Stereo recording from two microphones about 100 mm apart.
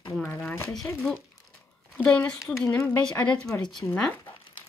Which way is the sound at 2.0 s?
15° left (ahead or behind).